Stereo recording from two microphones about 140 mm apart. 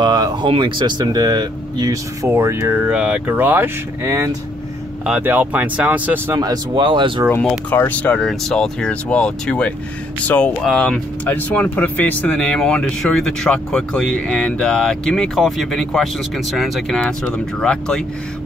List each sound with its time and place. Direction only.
0.0 s speech: 30° right (ahead or behind)
5.0 s speech: 10° right (ahead or behind)
6.3 s speech: 30° right (ahead or behind)
7.2 s speech: 10° left (ahead or behind)